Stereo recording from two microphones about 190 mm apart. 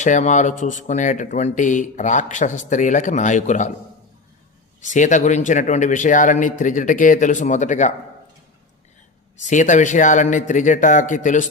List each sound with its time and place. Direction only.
0.0 s speech: 40° left (ahead or behind)
4.8 s speech: 40° left (ahead or behind)
9.5 s speech: 40° left (ahead or behind)